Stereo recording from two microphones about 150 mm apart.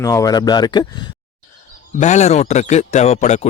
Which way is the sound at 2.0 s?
50° left (ahead or behind).